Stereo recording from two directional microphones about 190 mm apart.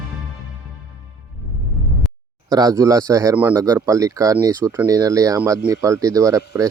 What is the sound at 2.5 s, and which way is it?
Speech, 20° right (ahead or behind).